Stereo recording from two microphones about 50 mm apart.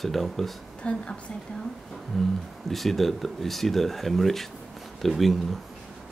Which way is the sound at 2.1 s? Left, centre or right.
Centre.